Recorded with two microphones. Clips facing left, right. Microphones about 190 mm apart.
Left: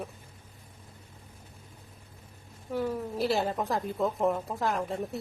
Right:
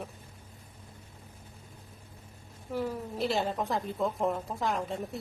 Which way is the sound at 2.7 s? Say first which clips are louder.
Left 2 dB; centre (ahead or behind).